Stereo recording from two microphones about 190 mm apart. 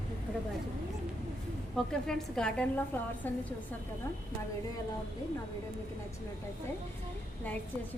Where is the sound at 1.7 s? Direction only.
5° left (ahead or behind).